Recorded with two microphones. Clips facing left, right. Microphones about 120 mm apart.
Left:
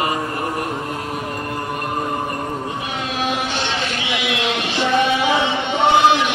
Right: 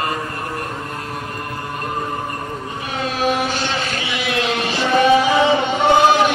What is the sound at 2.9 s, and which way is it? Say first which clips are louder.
Vehicle: right 5 dB; 40° right (ahead or behind).